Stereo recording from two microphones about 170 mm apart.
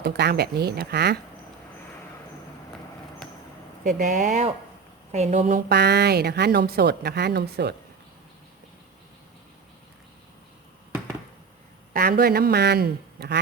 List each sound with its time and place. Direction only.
0.0 s speech: 70° right (ahead or behind)
3.8 s speech: 50° right (ahead or behind)
5.6 s speech: 75° right (ahead or behind)
11.9 s speech: 60° right (ahead or behind)